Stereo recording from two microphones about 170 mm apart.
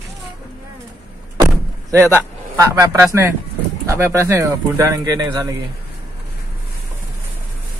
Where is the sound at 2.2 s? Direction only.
15° right (ahead or behind).